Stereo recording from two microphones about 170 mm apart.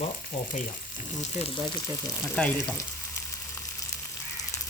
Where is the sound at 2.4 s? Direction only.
5° left (ahead or behind).